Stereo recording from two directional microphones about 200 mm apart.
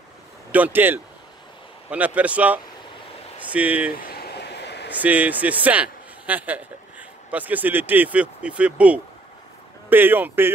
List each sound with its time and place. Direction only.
0.5 s speech: 10° right (ahead or behind)
4.1 s vehicle: 55° left (ahead or behind)
4.9 s speech: 5° right (ahead or behind)